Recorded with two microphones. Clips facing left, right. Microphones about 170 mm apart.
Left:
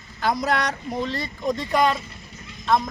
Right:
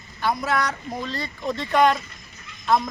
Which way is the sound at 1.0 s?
20° left (ahead or behind).